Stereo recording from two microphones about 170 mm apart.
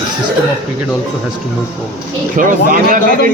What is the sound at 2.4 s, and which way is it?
Speech, 50° right (ahead or behind).